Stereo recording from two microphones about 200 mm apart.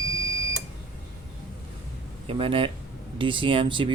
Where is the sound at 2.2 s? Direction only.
25° right (ahead or behind).